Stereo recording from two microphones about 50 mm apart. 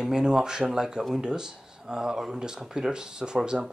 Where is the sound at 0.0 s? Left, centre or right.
Centre.